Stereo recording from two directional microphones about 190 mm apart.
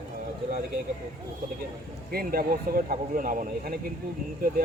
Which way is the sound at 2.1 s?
50° right (ahead or behind).